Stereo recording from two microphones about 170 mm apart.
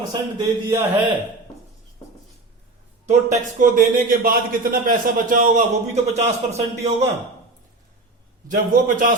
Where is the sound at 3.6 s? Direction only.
55° right (ahead or behind).